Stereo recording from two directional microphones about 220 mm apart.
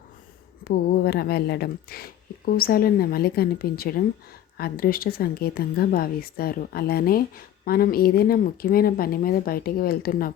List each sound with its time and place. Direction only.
0.6 s a woman's voice: 45° left (ahead or behind)